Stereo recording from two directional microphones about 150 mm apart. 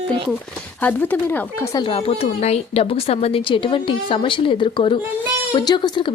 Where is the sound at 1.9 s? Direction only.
40° left (ahead or behind).